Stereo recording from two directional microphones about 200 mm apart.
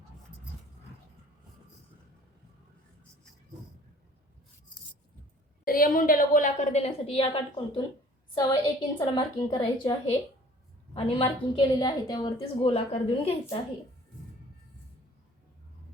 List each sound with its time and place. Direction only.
5.6 s a woman's voice: 45° left (ahead or behind); by 7.3 s 30° left (ahead or behind)
8.4 s a woman's voice: 20° left (ahead or behind)